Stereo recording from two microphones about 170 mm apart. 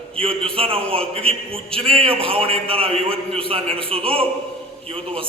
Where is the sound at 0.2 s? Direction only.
35° right (ahead or behind).